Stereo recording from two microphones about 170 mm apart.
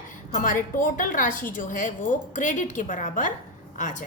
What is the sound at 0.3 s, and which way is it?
A woman's voice, 50° left (ahead or behind).